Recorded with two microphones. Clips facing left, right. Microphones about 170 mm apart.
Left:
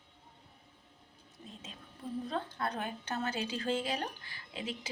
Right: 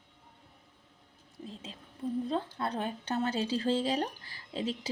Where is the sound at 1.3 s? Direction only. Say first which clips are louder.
Right 6 dB; 30° right (ahead or behind).